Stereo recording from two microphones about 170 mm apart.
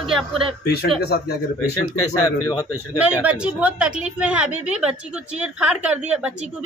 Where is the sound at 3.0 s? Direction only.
10° right (ahead or behind).